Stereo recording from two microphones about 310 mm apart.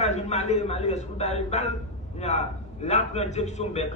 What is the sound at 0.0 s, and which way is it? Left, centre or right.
A man's voice, left.